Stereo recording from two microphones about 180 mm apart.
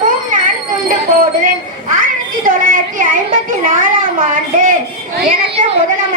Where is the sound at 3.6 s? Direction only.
50° right (ahead or behind).